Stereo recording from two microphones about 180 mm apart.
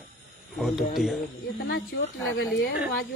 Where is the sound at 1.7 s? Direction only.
80° left.